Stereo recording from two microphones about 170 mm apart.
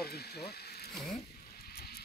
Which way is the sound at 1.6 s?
65° left (ahead or behind).